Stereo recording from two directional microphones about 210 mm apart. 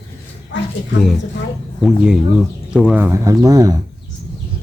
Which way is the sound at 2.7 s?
5° right (ahead or behind).